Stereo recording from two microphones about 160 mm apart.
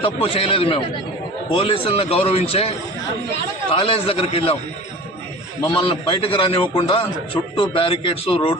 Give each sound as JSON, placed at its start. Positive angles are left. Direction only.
{"t": 0.0, "sound": "a man's voice", "side_deg": 35}
{"t": 5.6, "sound": "a man's voice", "side_deg": 35}